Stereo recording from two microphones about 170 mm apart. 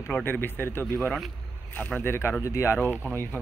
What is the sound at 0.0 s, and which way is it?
Speech, 10° left (ahead or behind).